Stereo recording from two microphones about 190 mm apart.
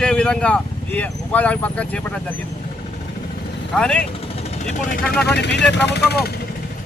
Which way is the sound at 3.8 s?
5° left (ahead or behind).